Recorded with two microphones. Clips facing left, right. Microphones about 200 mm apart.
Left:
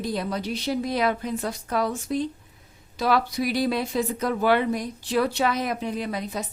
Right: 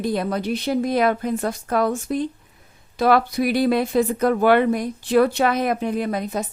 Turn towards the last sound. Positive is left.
turn(degrees=-50)  # may be behind; listen again after turning